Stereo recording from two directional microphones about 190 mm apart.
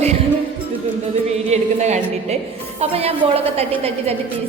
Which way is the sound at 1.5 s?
35° right (ahead or behind).